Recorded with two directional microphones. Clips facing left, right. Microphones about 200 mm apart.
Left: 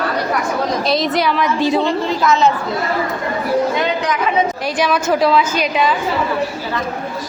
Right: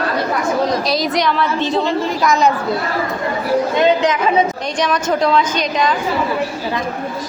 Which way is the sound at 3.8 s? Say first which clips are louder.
Right 5 dB; 25° right (ahead or behind).